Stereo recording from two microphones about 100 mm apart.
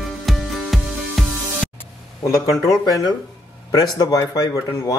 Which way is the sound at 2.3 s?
30° left (ahead or behind).